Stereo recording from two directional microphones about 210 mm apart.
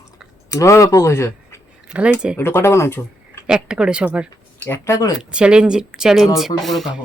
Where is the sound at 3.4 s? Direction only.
5° right (ahead or behind).